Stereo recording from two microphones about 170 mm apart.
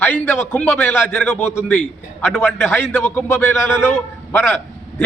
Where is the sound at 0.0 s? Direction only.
15° left (ahead or behind).